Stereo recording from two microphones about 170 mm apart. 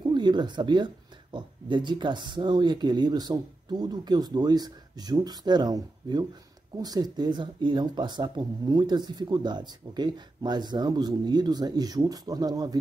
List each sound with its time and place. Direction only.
0.1 s speech: 25° right (ahead or behind)